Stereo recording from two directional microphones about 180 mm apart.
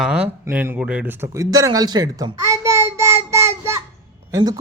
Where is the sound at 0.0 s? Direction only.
5° right (ahead or behind).